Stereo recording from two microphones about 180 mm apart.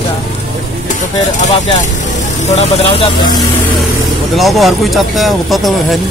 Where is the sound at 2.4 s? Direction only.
40° left (ahead or behind).